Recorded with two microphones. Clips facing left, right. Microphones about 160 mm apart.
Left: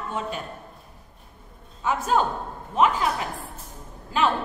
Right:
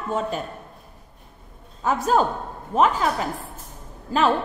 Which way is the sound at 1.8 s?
40° right (ahead or behind).